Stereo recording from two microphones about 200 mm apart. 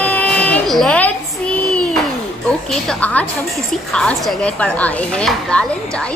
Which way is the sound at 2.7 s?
5° left (ahead or behind).